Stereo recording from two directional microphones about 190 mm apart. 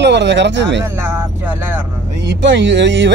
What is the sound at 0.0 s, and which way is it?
Speech, 65° right (ahead or behind).